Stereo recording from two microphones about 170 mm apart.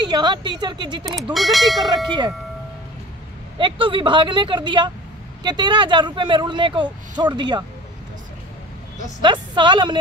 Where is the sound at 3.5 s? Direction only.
30° right (ahead or behind).